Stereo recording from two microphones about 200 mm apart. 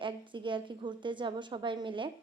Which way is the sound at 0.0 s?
25° right (ahead or behind).